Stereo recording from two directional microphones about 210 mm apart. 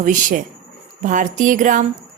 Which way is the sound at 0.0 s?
40° right (ahead or behind).